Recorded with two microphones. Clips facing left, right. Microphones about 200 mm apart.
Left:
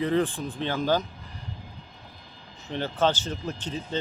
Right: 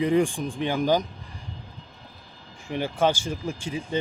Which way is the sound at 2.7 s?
10° right (ahead or behind).